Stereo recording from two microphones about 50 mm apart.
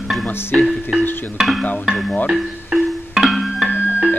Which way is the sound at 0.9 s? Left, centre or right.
Centre.